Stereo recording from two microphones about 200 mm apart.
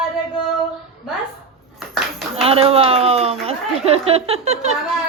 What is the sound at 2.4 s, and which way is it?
Speech, 30° right (ahead or behind).